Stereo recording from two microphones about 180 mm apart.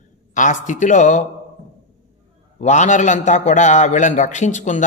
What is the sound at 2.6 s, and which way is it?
Speech, 40° left (ahead or behind).